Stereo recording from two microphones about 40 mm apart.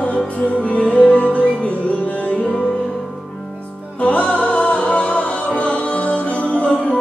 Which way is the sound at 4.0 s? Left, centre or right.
Left.